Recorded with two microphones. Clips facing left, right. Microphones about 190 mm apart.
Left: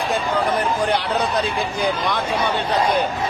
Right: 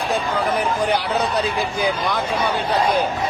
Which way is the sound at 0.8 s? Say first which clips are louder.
Even; 10° right (ahead or behind).